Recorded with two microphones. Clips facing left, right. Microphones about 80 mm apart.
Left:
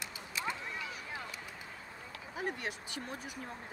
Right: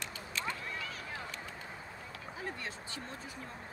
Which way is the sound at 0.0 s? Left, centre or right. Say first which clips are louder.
Even; centre.